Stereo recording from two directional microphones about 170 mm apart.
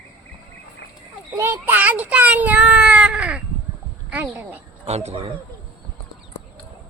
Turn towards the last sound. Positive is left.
turn(degrees=-40)  # may be behind; listen again after turning